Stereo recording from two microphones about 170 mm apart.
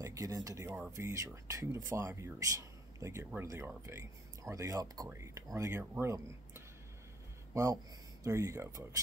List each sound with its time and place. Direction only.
0.0 s speech: 20° right (ahead or behind)